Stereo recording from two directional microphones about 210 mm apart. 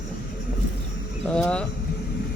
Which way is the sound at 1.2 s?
5° left (ahead or behind).